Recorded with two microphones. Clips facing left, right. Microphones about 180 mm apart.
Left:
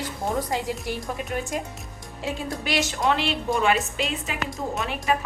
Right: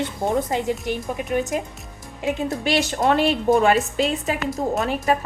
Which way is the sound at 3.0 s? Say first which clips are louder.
Right 6 dB; 45° right (ahead or behind).